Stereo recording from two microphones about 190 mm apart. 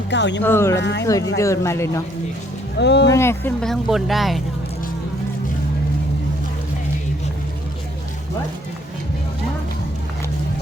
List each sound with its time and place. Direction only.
0.1 s speech: 65° left (ahead or behind)
0.4 s speech: 15° left (ahead or behind)
0.8 s speech: 65° left (ahead or behind)
1.4 s speech: 15° left (ahead or behind)
2.7 s speech: 65° left (ahead or behind)
3.1 s speech: 15° left (ahead or behind)